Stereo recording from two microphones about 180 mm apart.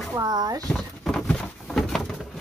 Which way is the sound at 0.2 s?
20° right (ahead or behind).